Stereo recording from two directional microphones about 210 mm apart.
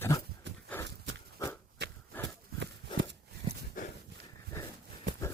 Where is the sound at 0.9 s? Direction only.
55° right (ahead or behind).